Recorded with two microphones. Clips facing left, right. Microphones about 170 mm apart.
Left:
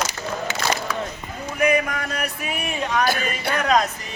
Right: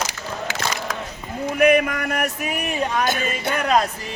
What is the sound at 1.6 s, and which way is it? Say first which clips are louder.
Music: right 4 dB; 60° right (ahead or behind).